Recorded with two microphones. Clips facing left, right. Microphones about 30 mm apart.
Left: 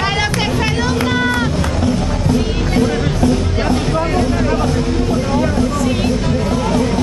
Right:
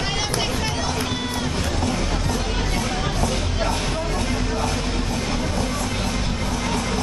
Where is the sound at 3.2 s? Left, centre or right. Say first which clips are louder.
Left 8 dB; left.